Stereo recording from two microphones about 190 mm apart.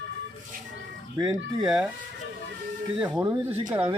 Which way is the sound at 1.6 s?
Centre (ahead or behind).